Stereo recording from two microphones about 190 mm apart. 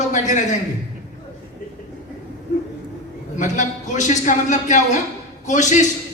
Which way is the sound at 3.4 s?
40° left (ahead or behind).